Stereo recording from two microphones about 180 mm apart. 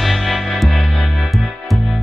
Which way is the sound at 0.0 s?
Centre (ahead or behind).